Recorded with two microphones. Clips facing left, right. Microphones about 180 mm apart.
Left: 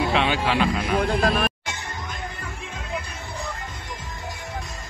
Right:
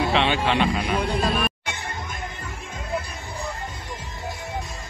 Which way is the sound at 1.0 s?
55° left (ahead or behind).